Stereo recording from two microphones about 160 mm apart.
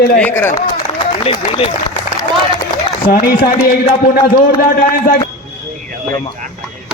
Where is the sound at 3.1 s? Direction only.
65° left (ahead or behind).